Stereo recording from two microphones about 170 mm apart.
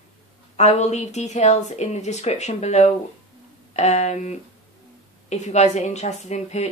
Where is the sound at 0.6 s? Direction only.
40° left (ahead or behind).